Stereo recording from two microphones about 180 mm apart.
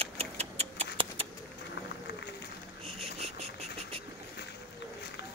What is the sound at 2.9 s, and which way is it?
Insect, 35° right (ahead or behind).